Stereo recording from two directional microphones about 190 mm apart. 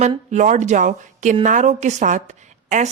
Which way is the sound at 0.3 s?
40° right (ahead or behind).